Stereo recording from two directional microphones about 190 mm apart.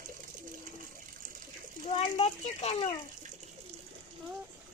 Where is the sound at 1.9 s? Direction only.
35° left (ahead or behind).